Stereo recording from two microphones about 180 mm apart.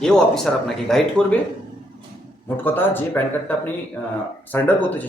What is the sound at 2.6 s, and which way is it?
Speech, 10° left (ahead or behind).